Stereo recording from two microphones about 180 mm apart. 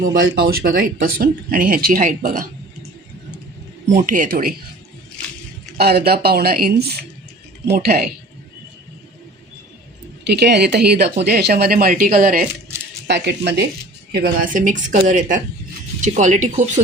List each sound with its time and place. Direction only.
0.0 s speech: 55° right (ahead or behind)
3.8 s speech: 45° right (ahead or behind)
5.7 s speech: 60° right (ahead or behind)
10.2 s speech: 65° right (ahead or behind); by 12.5 s 50° right (ahead or behind)
13.1 s speech: 70° right (ahead or behind)
14.1 s speech: 55° right (ahead or behind)